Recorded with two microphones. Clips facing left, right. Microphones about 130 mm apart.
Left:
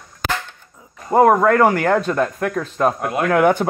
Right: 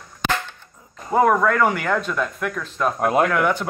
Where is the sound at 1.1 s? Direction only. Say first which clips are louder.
Left 4 dB; 40° left (ahead or behind).